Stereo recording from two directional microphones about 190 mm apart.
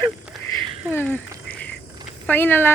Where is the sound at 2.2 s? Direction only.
10° left (ahead or behind).